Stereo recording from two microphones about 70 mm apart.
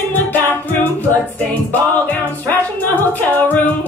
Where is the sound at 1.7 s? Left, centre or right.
Left.